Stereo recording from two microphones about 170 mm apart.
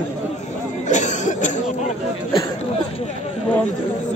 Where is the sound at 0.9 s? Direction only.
45° left (ahead or behind).